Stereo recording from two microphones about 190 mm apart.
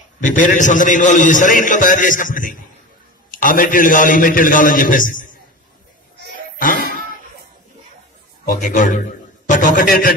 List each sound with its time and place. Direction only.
0.2 s a man's voice: 45° left (ahead or behind)
6.6 s a sound: 45° left (ahead or behind)
8.5 s a man's voice: 45° left (ahead or behind)